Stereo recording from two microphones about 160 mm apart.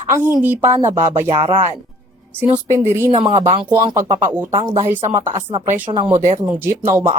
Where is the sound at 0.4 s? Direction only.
15° right (ahead or behind).